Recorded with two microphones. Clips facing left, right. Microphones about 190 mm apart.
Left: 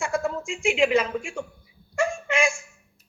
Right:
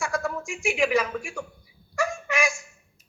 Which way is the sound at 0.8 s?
25° left (ahead or behind).